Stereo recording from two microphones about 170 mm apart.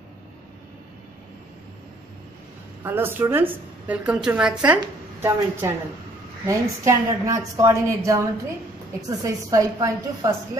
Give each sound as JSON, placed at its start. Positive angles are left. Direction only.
{"t": 2.8, "sound": "a woman's voice", "side_deg": -10}
{"t": 9.2, "sound": "a woman's voice", "side_deg": -20}